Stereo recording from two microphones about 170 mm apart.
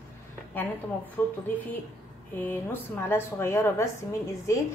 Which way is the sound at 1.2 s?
10° left (ahead or behind).